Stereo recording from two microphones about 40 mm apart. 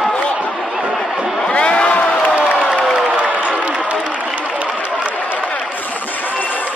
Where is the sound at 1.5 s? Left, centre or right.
Left.